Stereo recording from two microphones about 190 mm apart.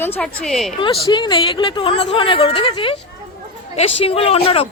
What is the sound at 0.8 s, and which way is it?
Speech, 25° left (ahead or behind).